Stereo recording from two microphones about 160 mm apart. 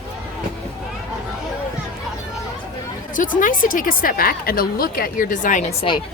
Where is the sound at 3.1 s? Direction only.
55° left (ahead or behind).